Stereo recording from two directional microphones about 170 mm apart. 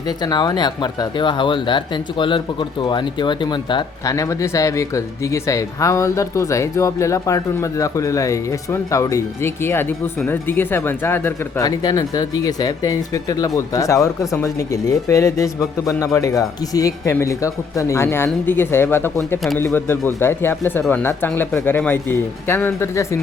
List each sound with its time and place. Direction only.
0.2 s speech: 25° left (ahead or behind)